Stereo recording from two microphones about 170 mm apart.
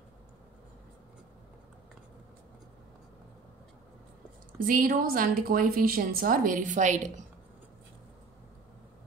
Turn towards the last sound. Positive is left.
turn(degrees=-45)  # may be behind; listen again after turning